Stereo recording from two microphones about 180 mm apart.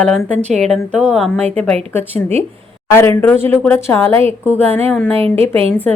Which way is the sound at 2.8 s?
15° left (ahead or behind).